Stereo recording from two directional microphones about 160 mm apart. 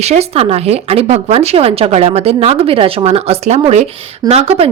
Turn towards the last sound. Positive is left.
turn(degrees=-40)  # may be behind; listen again after turning